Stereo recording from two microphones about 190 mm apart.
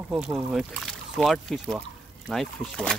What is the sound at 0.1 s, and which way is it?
Speech, 5° right (ahead or behind).